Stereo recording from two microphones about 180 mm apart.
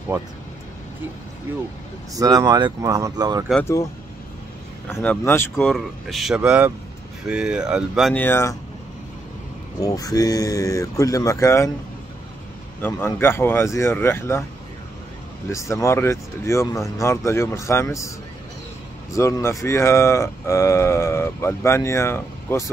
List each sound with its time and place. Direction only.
2.1 s speech: 20° right (ahead or behind)
4.8 s speech: 10° left (ahead or behind)
5.7 s speech: centre (ahead or behind)
8.1 s speech: 10° left (ahead or behind)
9.8 s speech: 20° left (ahead or behind)
12.8 s speech: 15° left (ahead or behind)
15.5 s speech: 15° left (ahead or behind)
19.1 s speech: 15° left (ahead or behind)